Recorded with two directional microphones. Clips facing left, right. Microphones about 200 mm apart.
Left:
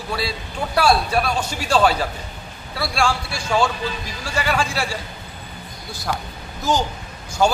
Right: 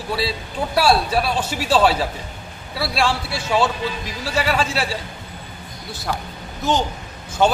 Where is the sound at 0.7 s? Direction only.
5° right (ahead or behind).